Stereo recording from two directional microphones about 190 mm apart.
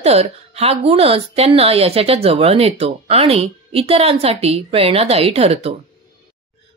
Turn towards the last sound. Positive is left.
turn(degrees=-30)  # may be behind; listen again after turning